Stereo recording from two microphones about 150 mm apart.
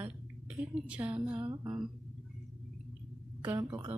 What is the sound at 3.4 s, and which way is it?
Speech, 15° right (ahead or behind).